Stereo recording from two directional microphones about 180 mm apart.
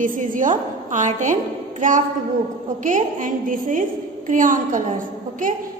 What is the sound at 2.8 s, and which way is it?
A woman's voice, 45° right (ahead or behind).